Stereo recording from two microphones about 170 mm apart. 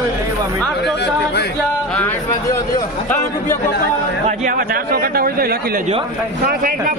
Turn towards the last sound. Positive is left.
turn(degrees=-60)  # may be behind; listen again after turning